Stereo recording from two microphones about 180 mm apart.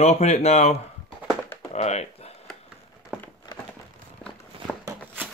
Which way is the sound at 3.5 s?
25° left (ahead or behind).